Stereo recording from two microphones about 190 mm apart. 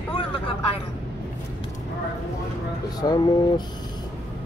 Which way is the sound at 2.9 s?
20° left (ahead or behind).